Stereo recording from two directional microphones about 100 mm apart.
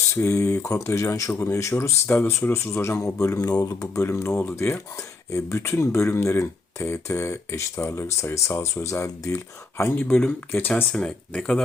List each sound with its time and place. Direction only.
0.2 s speech: 30° left (ahead or behind)
4.4 s speech: 20° left (ahead or behind)
9.8 s speech: 15° left (ahead or behind)
10.9 s speech: 5° left (ahead or behind)